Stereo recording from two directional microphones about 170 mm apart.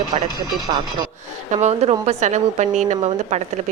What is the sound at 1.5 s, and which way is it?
A woman's voice, 40° right (ahead or behind).